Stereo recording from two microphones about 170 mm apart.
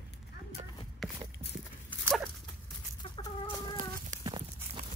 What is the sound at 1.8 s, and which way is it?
Dog, 5° left (ahead or behind).